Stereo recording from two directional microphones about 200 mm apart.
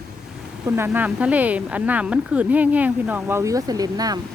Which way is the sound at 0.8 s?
10° right (ahead or behind).